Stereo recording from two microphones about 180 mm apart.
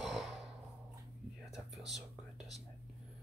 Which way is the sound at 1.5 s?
Centre (ahead or behind).